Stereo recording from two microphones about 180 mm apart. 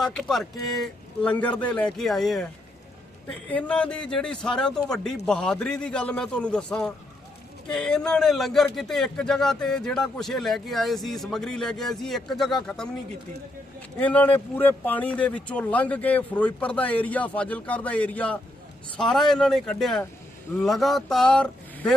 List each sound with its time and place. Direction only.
0.0 s speech: centre (ahead or behind)
3.5 s speech: 5° left (ahead or behind)
14.0 s speech: 10° left (ahead or behind)